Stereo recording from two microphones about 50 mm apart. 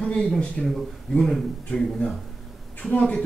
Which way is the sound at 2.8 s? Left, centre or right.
Left.